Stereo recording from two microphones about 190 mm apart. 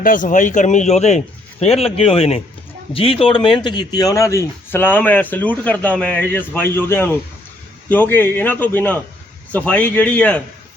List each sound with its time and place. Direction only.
0.0 s a man's voice: 45° left (ahead or behind); by 10.4 s 10° left (ahead or behind)